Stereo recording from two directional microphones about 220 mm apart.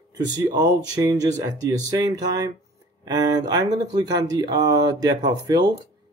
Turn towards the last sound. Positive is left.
turn(degrees=-20)  # may be behind; listen again after turning